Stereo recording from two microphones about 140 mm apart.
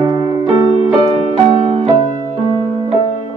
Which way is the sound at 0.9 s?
45° right (ahead or behind).